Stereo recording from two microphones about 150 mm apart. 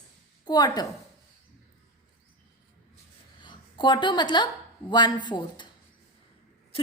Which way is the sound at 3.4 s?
30° left (ahead or behind).